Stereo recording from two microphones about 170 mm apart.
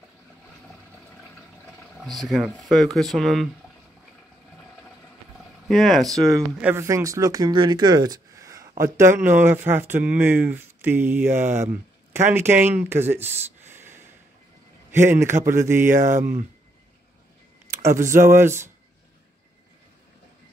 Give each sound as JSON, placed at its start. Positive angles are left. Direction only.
{"t": 2.0, "sound": "speech", "side_deg": 0}
{"t": 5.7, "sound": "speech", "side_deg": 0}
{"t": 6.6, "sound": "a man's voice", "side_deg": -15}
{"t": 17.6, "sound": "speech", "side_deg": -15}